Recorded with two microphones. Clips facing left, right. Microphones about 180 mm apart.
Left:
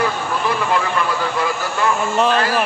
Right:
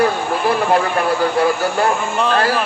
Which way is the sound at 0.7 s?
50° right (ahead or behind).